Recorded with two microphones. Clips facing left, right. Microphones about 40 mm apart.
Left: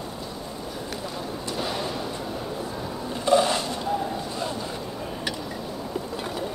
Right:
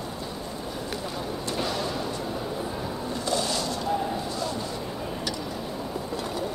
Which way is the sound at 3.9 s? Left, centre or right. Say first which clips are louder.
Even; centre.